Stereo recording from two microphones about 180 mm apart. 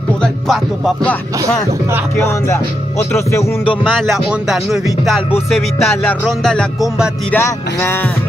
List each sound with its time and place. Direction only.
0.2 s music: centre (ahead or behind)
2.1 s music: 15° left (ahead or behind)
3.8 s music: centre (ahead or behind)
7.3 s music: 15° left (ahead or behind)